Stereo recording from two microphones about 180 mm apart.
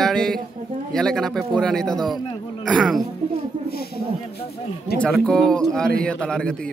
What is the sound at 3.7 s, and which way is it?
Speech, 60° left (ahead or behind).